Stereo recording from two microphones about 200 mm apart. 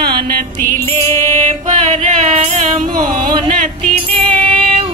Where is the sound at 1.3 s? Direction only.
35° right (ahead or behind).